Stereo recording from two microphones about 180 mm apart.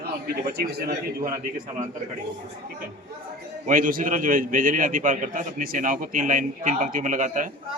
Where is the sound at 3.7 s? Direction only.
50° right (ahead or behind).